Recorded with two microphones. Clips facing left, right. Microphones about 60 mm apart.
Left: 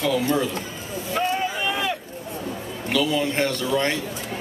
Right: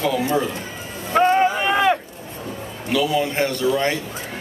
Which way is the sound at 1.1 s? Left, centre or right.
Right.